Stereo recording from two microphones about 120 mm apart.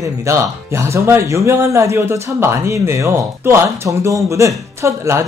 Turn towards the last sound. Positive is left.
turn(degrees=-25)  # may be behind; listen again after turning